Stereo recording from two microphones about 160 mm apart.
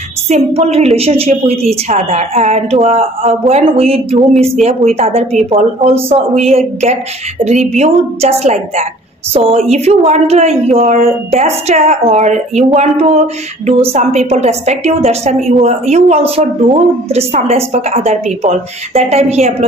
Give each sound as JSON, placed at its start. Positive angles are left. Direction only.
{"t": 0.3, "sound": "a woman's voice", "side_deg": -40}